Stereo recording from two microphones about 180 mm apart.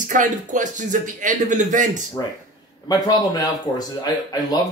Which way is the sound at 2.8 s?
20° left (ahead or behind).